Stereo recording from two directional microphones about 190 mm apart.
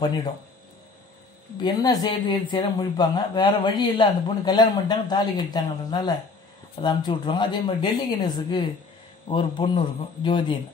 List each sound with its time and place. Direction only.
1.6 s speech: 20° left (ahead or behind)